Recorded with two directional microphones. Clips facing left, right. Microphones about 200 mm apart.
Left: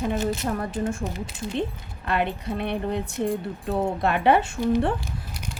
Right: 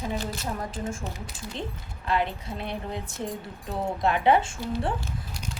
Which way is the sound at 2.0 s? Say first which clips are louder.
Left 2 dB; 60° left (ahead or behind).